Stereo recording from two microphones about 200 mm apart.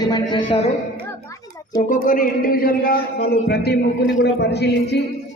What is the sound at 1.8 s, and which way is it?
A man's voice, 40° left (ahead or behind).